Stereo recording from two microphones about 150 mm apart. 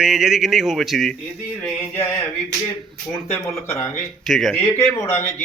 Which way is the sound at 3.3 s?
20° left (ahead or behind).